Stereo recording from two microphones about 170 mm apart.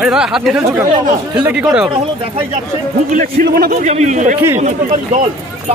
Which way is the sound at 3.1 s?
60° right (ahead or behind).